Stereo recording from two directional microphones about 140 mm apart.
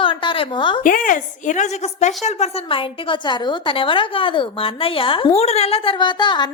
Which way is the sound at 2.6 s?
40° left (ahead or behind).